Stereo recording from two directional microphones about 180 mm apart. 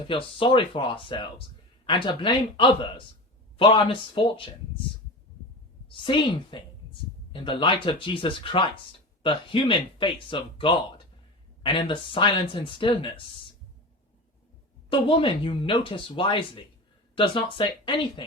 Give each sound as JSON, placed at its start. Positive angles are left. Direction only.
{"t": 0.1, "sound": "speech", "side_deg": 30}
{"t": 5.9, "sound": "speech", "side_deg": 30}
{"t": 14.8, "sound": "speech", "side_deg": 30}